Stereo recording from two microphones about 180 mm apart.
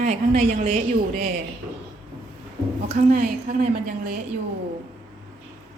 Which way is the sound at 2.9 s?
50° right (ahead or behind).